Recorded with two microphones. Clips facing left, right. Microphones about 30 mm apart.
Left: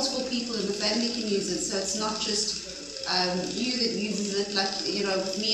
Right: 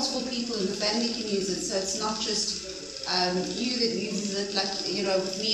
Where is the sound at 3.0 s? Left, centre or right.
Centre.